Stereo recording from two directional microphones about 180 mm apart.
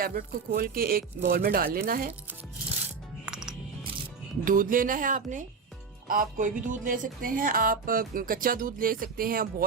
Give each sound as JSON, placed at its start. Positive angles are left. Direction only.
{"t": 0.0, "sound": "speech", "side_deg": -55}
{"t": 3.2, "sound": "music", "side_deg": -5}
{"t": 4.4, "sound": "speech", "side_deg": -50}